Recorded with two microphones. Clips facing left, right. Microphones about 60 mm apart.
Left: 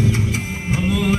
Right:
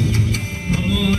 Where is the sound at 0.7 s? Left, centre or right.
Left.